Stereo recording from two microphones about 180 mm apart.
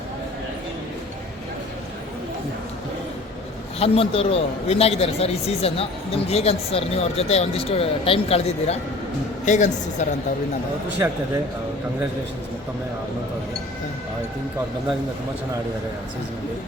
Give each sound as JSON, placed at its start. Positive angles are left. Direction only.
{"t": 3.8, "sound": "a man's voice", "side_deg": 30}